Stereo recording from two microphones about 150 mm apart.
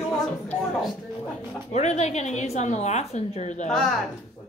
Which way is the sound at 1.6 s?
50° left (ahead or behind).